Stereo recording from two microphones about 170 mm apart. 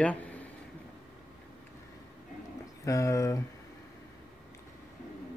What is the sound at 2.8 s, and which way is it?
Speech, 20° left (ahead or behind).